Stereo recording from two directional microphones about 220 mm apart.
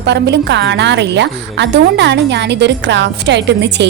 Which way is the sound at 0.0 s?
50° right (ahead or behind).